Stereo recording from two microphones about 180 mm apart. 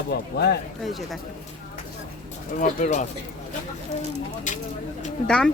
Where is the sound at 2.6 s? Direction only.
45° left (ahead or behind).